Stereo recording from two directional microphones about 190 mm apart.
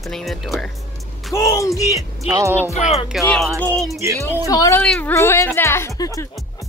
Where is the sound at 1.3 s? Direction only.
15° left (ahead or behind).